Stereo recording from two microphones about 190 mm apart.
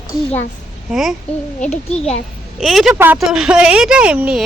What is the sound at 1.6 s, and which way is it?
Speech, 35° left (ahead or behind).